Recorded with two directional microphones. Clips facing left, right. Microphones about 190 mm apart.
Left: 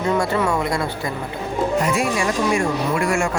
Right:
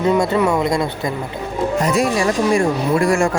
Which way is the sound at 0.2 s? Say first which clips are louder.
Right 4 dB; 20° right (ahead or behind).